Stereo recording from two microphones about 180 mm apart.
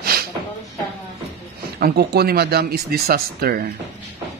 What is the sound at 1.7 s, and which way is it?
Speech, 60° right (ahead or behind).